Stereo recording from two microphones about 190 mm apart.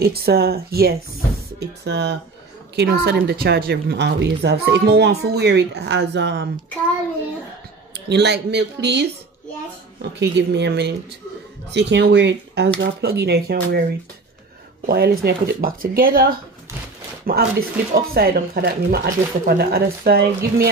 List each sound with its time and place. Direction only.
0.0 s a woman's voice: 55° right (ahead or behind)
7.9 s a woman's voice: 65° right (ahead or behind)
10.1 s a woman's voice: 65° right (ahead or behind)
14.9 s speech: 55° right (ahead or behind)